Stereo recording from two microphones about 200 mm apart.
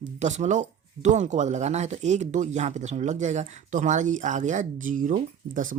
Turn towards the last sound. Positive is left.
turn(degrees=-40)  # may be behind; listen again after turning